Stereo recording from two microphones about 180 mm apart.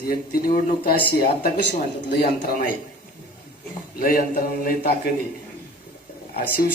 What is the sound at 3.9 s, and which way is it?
A man's voice, 55° left (ahead or behind).